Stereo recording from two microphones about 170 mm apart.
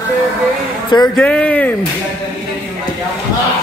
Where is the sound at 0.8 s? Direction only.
25° left (ahead or behind).